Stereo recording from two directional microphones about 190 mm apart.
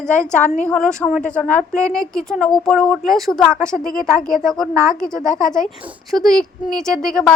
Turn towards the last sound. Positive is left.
turn(degrees=5)  # may be behind; listen again after turning